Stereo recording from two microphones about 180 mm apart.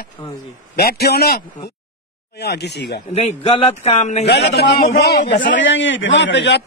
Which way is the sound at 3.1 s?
35° left (ahead or behind).